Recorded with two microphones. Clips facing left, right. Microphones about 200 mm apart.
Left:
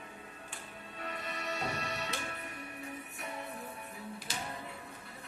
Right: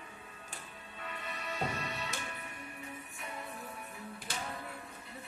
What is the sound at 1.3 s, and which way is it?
Music, 80° left.